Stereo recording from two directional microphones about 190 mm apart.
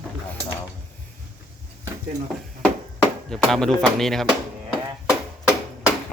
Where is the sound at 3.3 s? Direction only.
Centre (ahead or behind).